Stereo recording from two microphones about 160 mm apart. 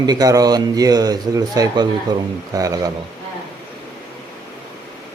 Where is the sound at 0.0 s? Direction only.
25° right (ahead or behind).